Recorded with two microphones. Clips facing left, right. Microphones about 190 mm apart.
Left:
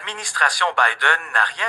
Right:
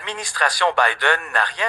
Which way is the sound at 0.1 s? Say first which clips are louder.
Right 2 dB; 5° right (ahead or behind).